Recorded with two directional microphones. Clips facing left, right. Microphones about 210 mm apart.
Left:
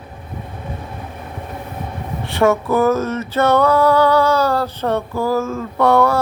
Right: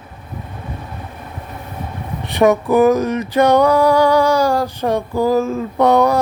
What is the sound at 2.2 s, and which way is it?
Music, 15° right (ahead or behind).